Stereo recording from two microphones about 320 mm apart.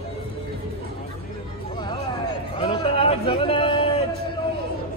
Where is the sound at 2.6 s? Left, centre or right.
Centre.